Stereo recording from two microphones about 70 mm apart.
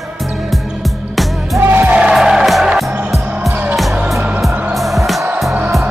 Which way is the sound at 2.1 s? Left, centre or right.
Centre.